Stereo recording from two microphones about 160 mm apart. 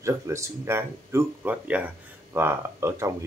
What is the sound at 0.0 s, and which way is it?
Speech, 20° right (ahead or behind).